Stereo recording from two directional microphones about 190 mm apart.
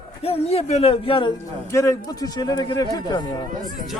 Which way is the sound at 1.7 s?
15° left (ahead or behind).